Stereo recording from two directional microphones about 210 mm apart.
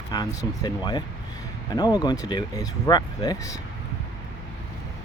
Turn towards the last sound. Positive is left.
turn(degrees=15)  # may be behind; listen again after turning